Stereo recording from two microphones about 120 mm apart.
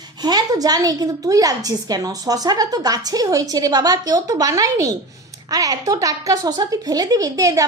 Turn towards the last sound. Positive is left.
turn(degrees=-30)  # may be behind; listen again after turning